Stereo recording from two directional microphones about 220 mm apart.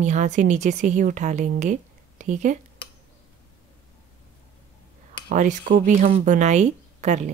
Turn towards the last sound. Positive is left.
turn(degrees=-35)  # may be behind; listen again after turning